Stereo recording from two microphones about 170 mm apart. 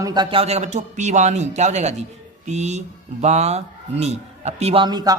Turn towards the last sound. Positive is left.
turn(degrees=-25)  # may be behind; listen again after turning